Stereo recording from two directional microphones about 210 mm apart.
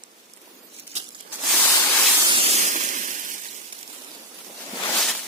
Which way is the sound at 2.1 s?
20° right (ahead or behind).